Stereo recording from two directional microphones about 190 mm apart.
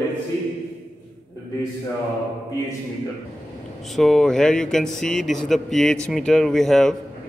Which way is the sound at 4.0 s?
5° left (ahead or behind).